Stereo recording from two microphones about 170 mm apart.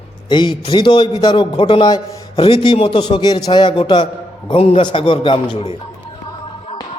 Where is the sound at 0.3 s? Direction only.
25° left (ahead or behind).